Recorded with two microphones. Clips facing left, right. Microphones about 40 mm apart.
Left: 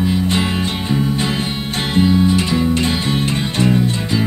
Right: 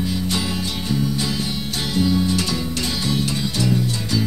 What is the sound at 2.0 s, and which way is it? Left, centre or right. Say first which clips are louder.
Music: left 6 dB; left.